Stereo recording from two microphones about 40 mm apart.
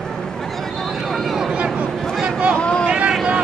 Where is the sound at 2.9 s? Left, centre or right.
Right.